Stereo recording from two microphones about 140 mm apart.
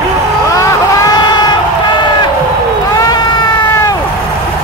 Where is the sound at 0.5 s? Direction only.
25° left (ahead or behind).